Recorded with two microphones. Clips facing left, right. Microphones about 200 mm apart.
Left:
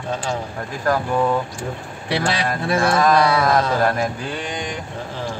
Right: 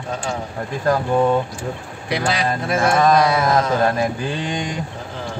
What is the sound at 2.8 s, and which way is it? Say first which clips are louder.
Mantra: right 1 dB; 20° right (ahead or behind).